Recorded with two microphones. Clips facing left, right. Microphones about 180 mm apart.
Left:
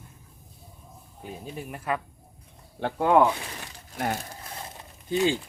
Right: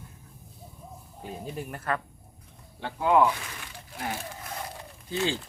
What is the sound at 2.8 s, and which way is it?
Speech, 55° left (ahead or behind).